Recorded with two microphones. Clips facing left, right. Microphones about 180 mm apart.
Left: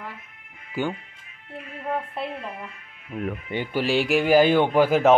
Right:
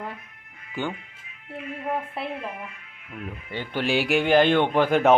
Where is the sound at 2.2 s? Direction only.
5° right (ahead or behind).